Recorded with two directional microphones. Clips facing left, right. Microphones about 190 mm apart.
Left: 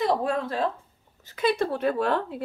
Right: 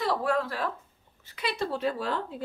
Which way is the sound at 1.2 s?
45° left (ahead or behind).